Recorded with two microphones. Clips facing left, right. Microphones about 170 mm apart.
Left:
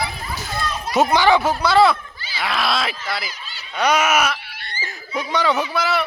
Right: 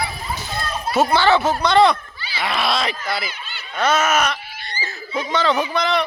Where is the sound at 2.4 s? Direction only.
Centre (ahead or behind).